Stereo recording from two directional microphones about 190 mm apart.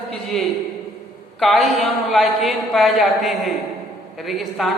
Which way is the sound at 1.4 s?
Centre (ahead or behind).